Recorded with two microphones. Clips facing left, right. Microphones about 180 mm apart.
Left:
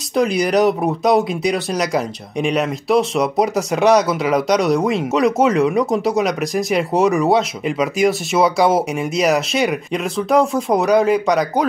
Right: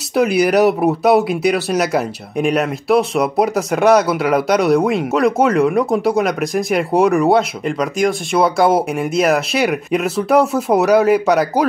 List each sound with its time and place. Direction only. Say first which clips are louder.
0.1 s speech: right 2 dB; 5° right (ahead or behind)